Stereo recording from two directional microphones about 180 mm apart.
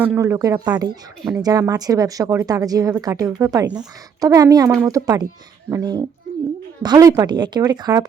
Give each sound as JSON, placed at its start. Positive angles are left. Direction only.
{"t": 0.0, "sound": "speech", "side_deg": -10}